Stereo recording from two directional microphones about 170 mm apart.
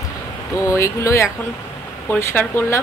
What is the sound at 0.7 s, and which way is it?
Speech, 15° left (ahead or behind).